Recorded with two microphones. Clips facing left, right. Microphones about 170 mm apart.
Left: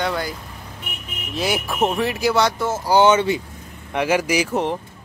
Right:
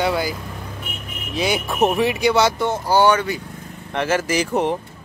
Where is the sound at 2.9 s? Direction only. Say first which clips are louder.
Left 2 dB; 20° left (ahead or behind).